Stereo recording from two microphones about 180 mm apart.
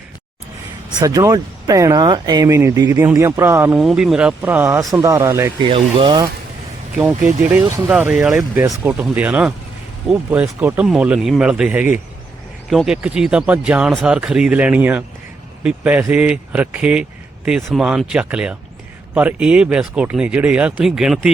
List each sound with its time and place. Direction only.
0.9 s speech: 20° right (ahead or behind)
3.8 s speech: centre (ahead or behind)
5.5 s speech: 30° right (ahead or behind)
6.9 s speech: 5° right (ahead or behind)